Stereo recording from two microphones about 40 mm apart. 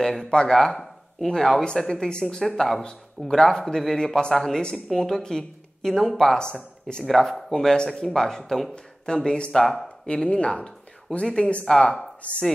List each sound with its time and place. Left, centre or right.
0.0 s speech: centre
0.3 s speech: left
2.4 s speech: centre
4.6 s speech: left
5.2 s speech: centre
7.1 s speech: centre
7.5 s speech: centre
7.9 s speech: centre
10.0 s speech: left
12.2 s chopping: left